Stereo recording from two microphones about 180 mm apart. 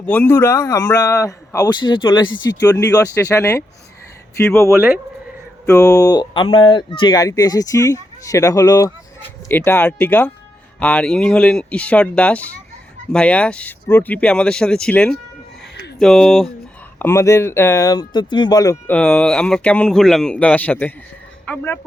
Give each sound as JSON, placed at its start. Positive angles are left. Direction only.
{"t": 0.0, "sound": "speech", "side_deg": 10}
{"t": 4.7, "sound": "speech", "side_deg": -10}
{"t": 5.6, "sound": "speech", "side_deg": 15}
{"t": 17.0, "sound": "speech", "side_deg": 15}
{"t": 18.9, "sound": "speech", "side_deg": 5}